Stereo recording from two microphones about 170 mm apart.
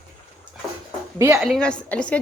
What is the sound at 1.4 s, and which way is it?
Speech, centre (ahead or behind).